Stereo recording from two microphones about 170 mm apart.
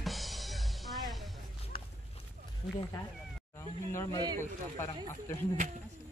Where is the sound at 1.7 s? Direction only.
30° left (ahead or behind).